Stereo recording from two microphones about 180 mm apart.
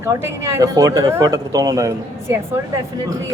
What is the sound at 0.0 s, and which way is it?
Speech, 15° right (ahead or behind).